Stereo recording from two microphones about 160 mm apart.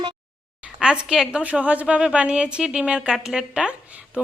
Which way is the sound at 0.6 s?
5° right (ahead or behind).